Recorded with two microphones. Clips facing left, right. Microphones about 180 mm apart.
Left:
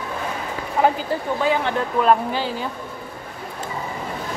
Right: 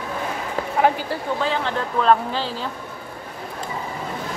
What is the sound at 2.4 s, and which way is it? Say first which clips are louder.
Speech: left 2 dB; 55° left (ahead or behind).